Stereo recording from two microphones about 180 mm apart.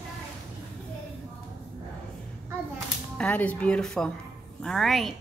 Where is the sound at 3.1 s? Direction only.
10° left (ahead or behind).